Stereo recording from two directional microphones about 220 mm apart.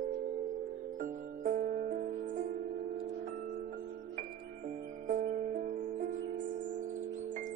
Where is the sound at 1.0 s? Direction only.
40° right (ahead or behind).